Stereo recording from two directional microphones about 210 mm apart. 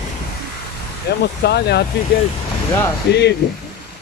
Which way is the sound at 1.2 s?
50° left (ahead or behind).